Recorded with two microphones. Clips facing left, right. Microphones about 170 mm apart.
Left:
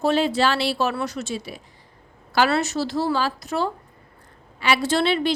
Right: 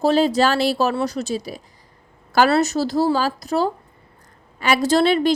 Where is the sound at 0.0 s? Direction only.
35° right (ahead or behind).